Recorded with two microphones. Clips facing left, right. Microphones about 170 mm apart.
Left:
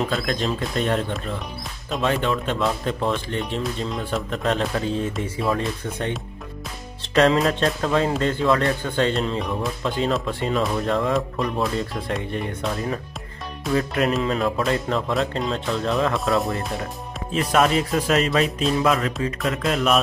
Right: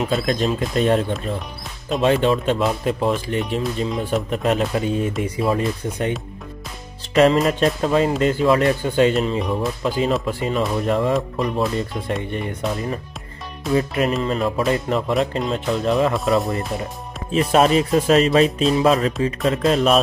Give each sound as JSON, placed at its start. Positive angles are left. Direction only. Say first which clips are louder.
{"t": 0.1, "sound": "speech", "louder": "right 4 dB", "side_deg": -20}
{"t": 7.2, "sound": "speech", "louder": "right 3 dB", "side_deg": -5}
{"t": 17.3, "sound": "speech", "louder": "right 4 dB", "side_deg": -25}